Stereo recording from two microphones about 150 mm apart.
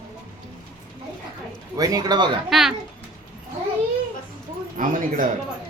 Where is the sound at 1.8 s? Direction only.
25° right (ahead or behind).